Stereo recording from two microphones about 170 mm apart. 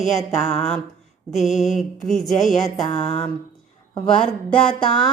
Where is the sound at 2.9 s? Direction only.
45° left (ahead or behind).